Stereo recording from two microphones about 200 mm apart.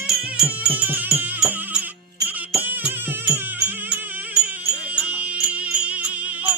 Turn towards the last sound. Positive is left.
turn(degrees=-5)  # may be behind; listen again after turning